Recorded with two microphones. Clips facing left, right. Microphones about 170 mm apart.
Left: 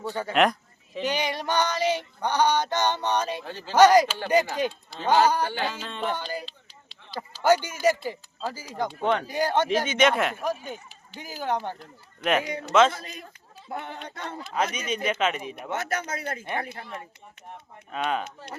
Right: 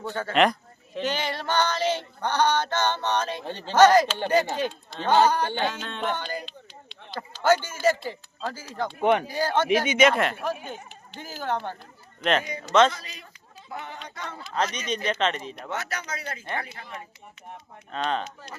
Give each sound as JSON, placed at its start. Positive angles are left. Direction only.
{"t": 0.0, "sound": "female singing", "side_deg": 10}
{"t": 7.1, "sound": "speech", "side_deg": 10}
{"t": 9.0, "sound": "speech", "side_deg": -15}
{"t": 9.3, "sound": "female singing", "side_deg": 15}
{"t": 9.6, "sound": "speech", "side_deg": -15}
{"t": 10.0, "sound": "speech", "side_deg": 0}
{"t": 11.2, "sound": "female singing", "side_deg": 15}
{"t": 12.5, "sound": "a man's voice", "side_deg": 65}
{"t": 12.9, "sound": "speech", "side_deg": 50}
{"t": 14.5, "sound": "female singing", "side_deg": 5}
{"t": 15.7, "sound": "speech", "side_deg": 50}
{"t": 17.9, "sound": "speech", "side_deg": 5}